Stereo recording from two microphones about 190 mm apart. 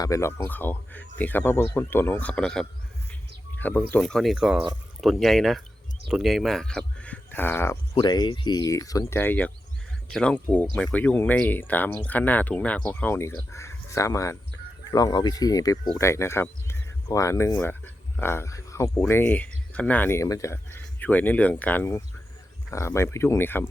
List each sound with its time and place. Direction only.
0.0 s speech: 15° left (ahead or behind)
7.9 s speech: 25° left (ahead or behind)